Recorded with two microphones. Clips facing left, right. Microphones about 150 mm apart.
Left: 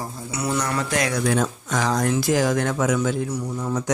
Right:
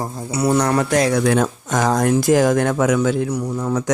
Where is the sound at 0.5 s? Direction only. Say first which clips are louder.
Right 7 dB; 55° right (ahead or behind).